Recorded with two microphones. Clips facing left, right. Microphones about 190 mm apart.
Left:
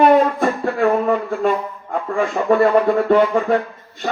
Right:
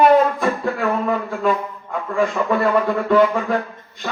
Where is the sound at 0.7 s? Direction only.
40° left (ahead or behind).